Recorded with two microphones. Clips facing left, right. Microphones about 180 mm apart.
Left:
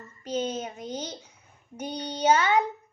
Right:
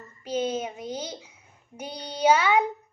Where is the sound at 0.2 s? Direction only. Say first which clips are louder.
Right 2 dB; 10° right (ahead or behind).